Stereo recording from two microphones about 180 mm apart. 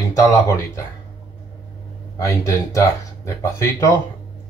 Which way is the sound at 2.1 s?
15° left (ahead or behind).